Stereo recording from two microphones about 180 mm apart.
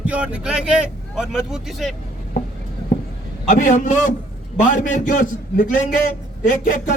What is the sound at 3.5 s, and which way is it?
A man's voice, 45° left (ahead or behind).